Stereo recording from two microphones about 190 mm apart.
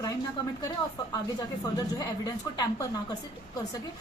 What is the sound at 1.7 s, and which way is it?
A woman's voice, 20° left (ahead or behind).